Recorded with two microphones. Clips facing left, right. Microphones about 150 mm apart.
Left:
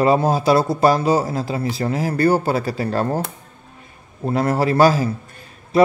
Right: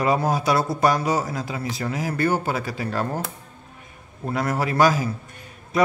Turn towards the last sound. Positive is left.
turn(degrees=30)  # may be behind; listen again after turning